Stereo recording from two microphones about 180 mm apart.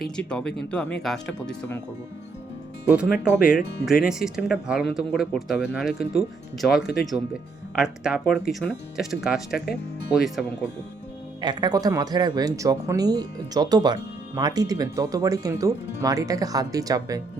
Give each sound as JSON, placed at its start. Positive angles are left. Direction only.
{"t": 0.0, "sound": "speech", "side_deg": 5}
{"t": 2.9, "sound": "speech", "side_deg": -5}
{"t": 11.3, "sound": "speech", "side_deg": -25}